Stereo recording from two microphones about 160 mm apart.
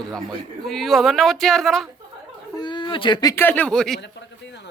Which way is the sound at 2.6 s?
30° left (ahead or behind).